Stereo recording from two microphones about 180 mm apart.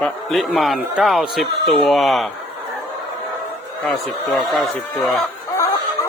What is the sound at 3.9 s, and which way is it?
Speech, centre (ahead or behind).